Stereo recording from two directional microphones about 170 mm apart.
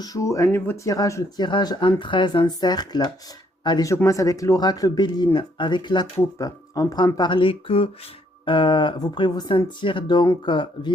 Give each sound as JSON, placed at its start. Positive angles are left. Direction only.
{"t": 0.0, "sound": "speech", "side_deg": 20}